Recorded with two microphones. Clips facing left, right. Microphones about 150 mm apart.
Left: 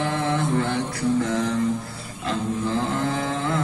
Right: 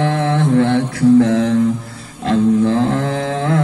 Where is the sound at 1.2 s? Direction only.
70° right (ahead or behind).